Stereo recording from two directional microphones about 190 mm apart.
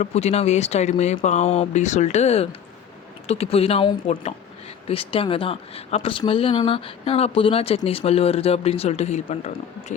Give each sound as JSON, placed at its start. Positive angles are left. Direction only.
{"t": 0.0, "sound": "speech", "side_deg": 35}